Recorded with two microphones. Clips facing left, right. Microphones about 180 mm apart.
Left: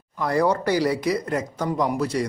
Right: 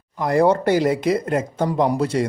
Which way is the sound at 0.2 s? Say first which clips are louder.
Right 4 dB; 20° right (ahead or behind).